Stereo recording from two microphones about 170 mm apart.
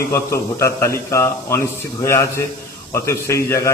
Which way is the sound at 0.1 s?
15° left (ahead or behind).